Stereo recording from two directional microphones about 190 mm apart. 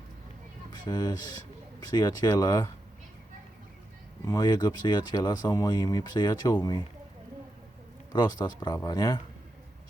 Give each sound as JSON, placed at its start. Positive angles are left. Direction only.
{"t": 0.7, "sound": "speech", "side_deg": 20}
{"t": 4.3, "sound": "speech", "side_deg": 20}
{"t": 8.1, "sound": "speech", "side_deg": 20}